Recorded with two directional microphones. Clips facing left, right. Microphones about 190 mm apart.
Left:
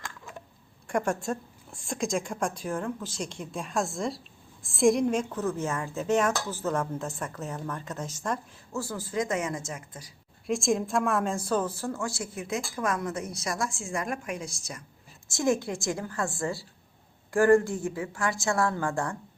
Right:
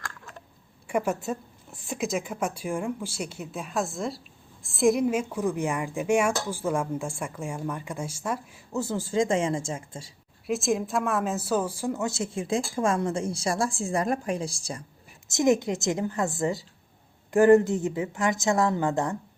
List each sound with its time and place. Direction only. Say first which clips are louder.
0.9 s a woman's voice: right 1 dB; 5° right (ahead or behind)
8.7 s speech: right 5 dB; 20° right (ahead or behind)
10.4 s speech: right 1 dB; 5° right (ahead or behind); by 14.8 s 30° right (ahead or behind)
15.3 s speech: right 4 dB; 20° right (ahead or behind)